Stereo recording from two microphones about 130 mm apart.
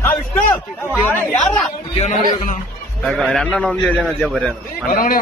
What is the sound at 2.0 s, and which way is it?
Speech, 65° left (ahead or behind).